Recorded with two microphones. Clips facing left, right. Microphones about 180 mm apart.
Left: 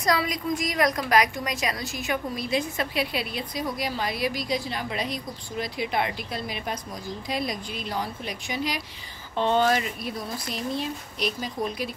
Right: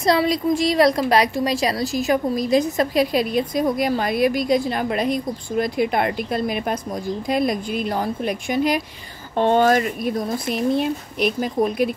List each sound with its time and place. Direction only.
0.0 s a woman's voice: 30° right (ahead or behind); by 11.9 s 55° right (ahead or behind)